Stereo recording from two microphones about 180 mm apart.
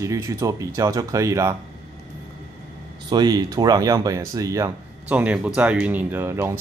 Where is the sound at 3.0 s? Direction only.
25° right (ahead or behind).